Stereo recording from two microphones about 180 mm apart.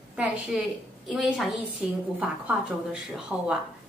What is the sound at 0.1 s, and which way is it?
A woman's voice, 5° right (ahead or behind).